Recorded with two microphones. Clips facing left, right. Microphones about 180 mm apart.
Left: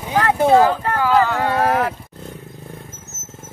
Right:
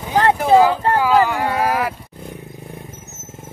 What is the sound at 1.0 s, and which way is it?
Wild animals, 10° right (ahead or behind).